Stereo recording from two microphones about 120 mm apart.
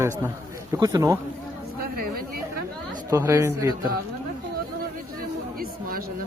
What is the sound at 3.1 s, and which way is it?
Speech, 25° right (ahead or behind).